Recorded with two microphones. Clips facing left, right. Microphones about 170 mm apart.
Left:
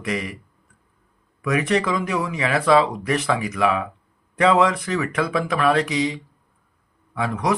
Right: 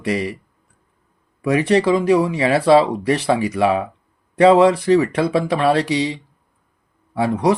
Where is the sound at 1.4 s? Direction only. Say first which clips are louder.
Right 5 dB; 30° right (ahead or behind).